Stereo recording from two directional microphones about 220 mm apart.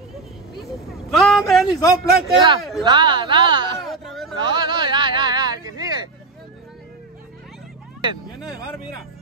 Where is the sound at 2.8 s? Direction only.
20° right (ahead or behind).